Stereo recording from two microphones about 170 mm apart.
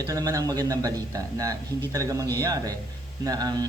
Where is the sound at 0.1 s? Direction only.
20° right (ahead or behind).